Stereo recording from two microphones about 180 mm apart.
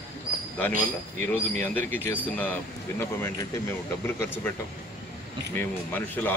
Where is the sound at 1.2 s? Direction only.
10° left (ahead or behind).